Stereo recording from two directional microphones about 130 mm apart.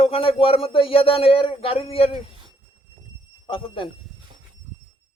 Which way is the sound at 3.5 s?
45° left (ahead or behind).